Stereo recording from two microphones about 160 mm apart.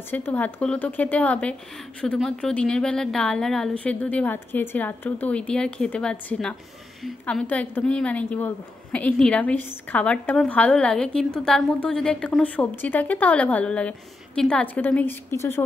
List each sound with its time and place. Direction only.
0.1 s a woman's voice: 10° left (ahead or behind)